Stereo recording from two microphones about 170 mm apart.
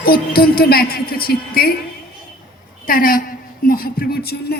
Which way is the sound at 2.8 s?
55° left (ahead or behind).